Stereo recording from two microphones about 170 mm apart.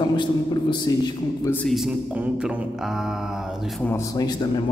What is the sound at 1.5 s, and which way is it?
Speech, centre (ahead or behind).